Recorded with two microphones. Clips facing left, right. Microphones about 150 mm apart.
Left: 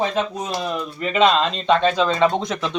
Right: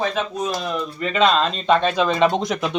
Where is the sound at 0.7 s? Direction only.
5° left (ahead or behind); by 2.8 s 15° right (ahead or behind).